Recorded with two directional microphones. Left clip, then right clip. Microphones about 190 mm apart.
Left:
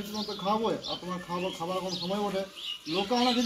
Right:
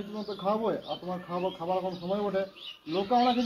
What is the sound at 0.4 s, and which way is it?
Speech, 10° left (ahead or behind).